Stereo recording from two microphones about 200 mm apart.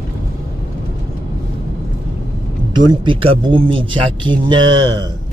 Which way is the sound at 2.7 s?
20° right (ahead or behind).